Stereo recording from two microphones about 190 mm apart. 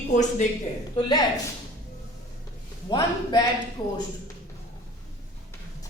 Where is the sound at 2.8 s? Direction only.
20° left (ahead or behind).